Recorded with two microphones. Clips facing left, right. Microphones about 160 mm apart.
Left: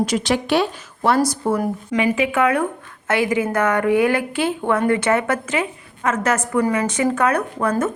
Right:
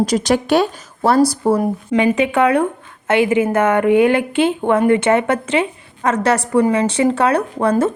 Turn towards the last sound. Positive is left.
turn(degrees=-30)  # may be behind; listen again after turning